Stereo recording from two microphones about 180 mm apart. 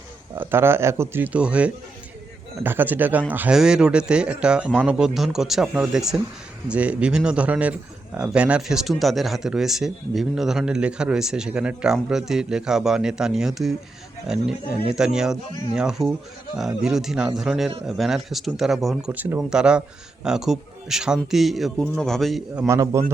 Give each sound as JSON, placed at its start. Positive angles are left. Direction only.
{"t": 0.3, "sound": "a man's voice", "side_deg": -15}
{"t": 22.6, "sound": "speech", "side_deg": -15}